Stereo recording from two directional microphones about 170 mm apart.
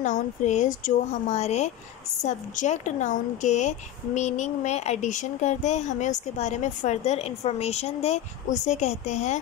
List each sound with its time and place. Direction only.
0.0 s speech: 45° left (ahead or behind)